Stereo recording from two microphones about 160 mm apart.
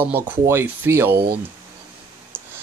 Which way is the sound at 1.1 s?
90° right.